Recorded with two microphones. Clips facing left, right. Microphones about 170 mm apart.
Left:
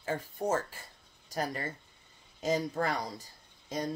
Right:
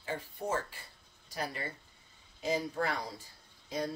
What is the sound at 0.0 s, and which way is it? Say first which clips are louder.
Speech: left 4 dB; 45° left (ahead or behind).